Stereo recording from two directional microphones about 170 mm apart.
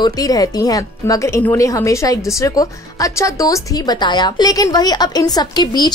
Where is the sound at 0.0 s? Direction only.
20° left (ahead or behind).